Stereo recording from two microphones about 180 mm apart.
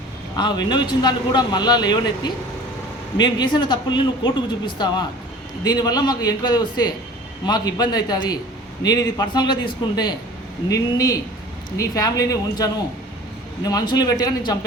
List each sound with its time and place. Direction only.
0.3 s a man's voice: 25° left (ahead or behind)